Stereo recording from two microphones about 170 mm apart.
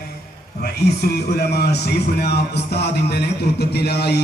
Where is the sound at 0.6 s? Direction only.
65° left (ahead or behind).